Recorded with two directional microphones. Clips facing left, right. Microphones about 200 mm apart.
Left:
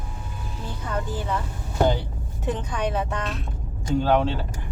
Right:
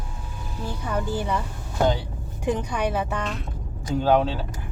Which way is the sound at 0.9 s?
15° right (ahead or behind).